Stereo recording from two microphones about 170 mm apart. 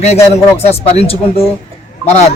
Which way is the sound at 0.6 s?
40° left (ahead or behind).